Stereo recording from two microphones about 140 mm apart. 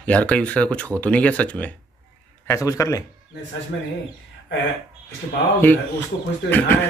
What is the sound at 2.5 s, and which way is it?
Speech, 20° left (ahead or behind).